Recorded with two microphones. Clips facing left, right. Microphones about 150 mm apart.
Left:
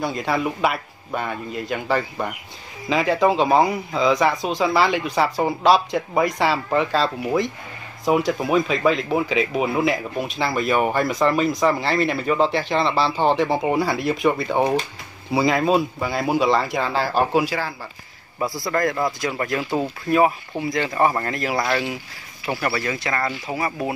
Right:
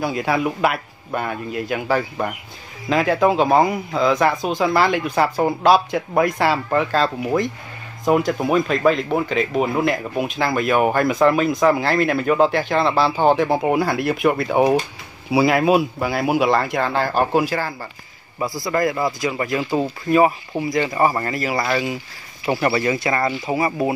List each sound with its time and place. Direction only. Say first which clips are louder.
0.0 s speech: right 2 dB; 5° right (ahead or behind)
22.5 s speech: right 5 dB; 20° right (ahead or behind)